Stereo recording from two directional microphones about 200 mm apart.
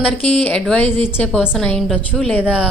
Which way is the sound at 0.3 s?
5° left (ahead or behind).